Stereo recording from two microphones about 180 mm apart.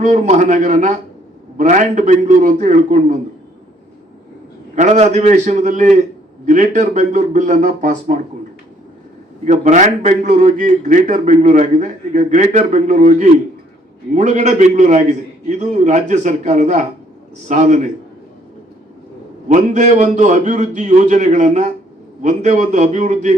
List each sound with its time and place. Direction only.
0.0 s a man's voice: 45° right (ahead or behind)
4.7 s a man's voice: 40° right (ahead or behind)
9.4 s a man's voice: 40° right (ahead or behind)
19.5 s a man's voice: 40° right (ahead or behind)